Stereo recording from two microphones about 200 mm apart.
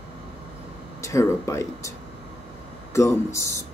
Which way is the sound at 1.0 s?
15° left (ahead or behind).